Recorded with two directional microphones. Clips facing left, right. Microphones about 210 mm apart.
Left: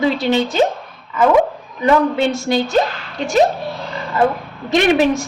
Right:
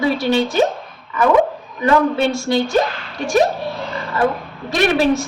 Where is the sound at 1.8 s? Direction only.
20° left (ahead or behind).